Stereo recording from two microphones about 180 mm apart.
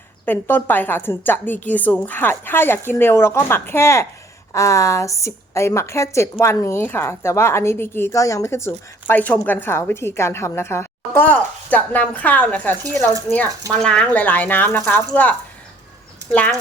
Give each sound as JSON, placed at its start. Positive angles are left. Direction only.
{"t": 0.3, "sound": "a woman's voice", "side_deg": 10}